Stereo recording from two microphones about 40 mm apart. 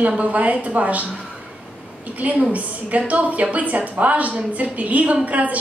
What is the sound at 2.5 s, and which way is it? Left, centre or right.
A woman's voice, right.